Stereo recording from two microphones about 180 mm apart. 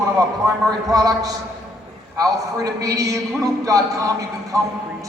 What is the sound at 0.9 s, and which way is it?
Speech, 20° right (ahead or behind).